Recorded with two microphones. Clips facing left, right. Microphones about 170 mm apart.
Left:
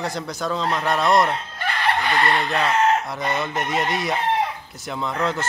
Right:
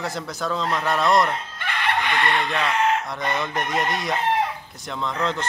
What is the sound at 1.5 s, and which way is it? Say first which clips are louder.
Chicken: left 2 dB; 35° left (ahead or behind).